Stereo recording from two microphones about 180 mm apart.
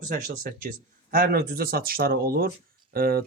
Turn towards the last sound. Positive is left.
turn(degrees=-55)  # may be behind; listen again after turning